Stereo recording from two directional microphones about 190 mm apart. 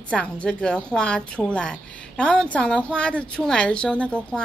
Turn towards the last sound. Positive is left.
turn(degrees=5)  # may be behind; listen again after turning